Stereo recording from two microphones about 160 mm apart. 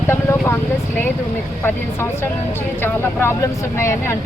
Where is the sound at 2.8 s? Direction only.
15° left (ahead or behind).